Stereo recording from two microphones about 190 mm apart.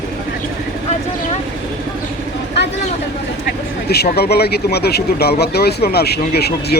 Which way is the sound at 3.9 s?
55° left (ahead or behind).